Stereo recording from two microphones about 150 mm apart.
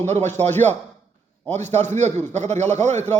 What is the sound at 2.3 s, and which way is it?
Speech, 50° right (ahead or behind).